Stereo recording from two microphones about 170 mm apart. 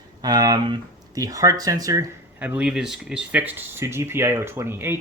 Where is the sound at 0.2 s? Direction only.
25° right (ahead or behind).